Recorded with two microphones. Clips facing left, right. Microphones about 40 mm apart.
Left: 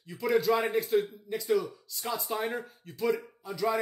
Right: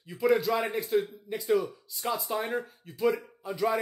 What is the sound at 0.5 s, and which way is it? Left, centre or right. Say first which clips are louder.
Speech: left 1 dB; centre.